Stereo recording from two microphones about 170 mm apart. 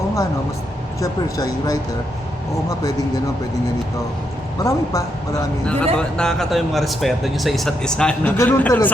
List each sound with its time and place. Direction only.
0.9 s a woman's voice: 20° left (ahead or behind)
4.6 s a woman's voice: 20° left (ahead or behind)
5.6 s a man's voice: 5° left (ahead or behind)